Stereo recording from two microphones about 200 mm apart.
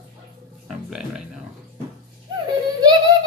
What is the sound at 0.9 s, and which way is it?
Music, centre (ahead or behind).